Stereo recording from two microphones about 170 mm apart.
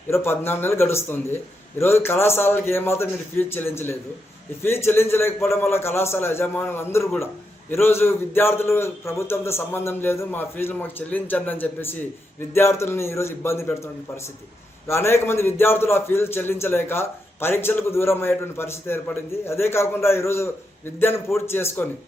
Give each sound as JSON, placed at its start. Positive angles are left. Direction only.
{"t": 0.1, "sound": "a man's voice", "side_deg": 15}